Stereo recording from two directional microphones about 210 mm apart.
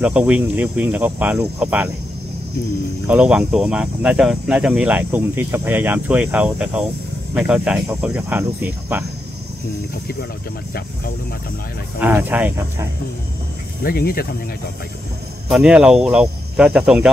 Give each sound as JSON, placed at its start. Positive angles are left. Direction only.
{"t": 0.0, "sound": "speech", "side_deg": -5}
{"t": 3.1, "sound": "speech", "side_deg": -5}
{"t": 12.0, "sound": "speech", "side_deg": -10}
{"t": 13.8, "sound": "speech", "side_deg": 45}
{"t": 15.4, "sound": "speech", "side_deg": -5}